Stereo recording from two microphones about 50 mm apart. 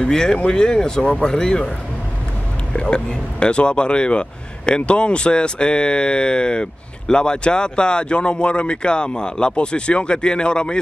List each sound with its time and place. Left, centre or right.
0.0 s speech: centre
2.7 s speech: centre